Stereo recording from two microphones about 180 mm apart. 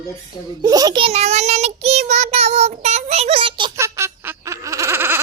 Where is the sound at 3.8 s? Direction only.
15° right (ahead or behind).